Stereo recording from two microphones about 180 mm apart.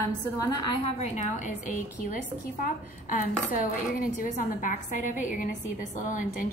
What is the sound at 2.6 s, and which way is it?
A woman's voice, 50° left (ahead or behind).